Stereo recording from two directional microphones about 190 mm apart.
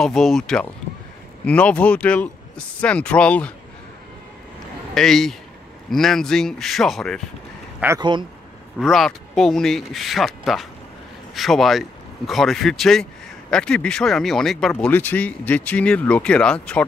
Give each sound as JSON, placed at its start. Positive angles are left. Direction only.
{"t": 0.0, "sound": "speech", "side_deg": 0}
{"t": 4.9, "sound": "speech", "side_deg": 0}
{"t": 8.0, "sound": "speech", "side_deg": -25}
{"t": 8.7, "sound": "speech", "side_deg": 0}